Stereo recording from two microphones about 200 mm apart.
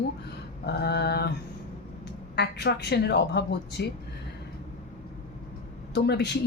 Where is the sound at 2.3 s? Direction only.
55° left (ahead or behind).